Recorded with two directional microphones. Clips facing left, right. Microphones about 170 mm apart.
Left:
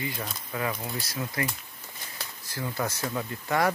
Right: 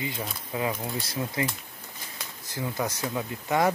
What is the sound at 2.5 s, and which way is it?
Speech, 15° right (ahead or behind).